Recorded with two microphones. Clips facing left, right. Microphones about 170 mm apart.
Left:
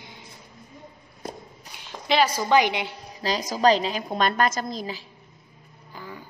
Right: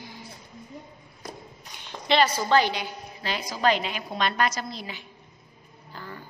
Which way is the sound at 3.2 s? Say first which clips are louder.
Left 4 dB; 40° left (ahead or behind).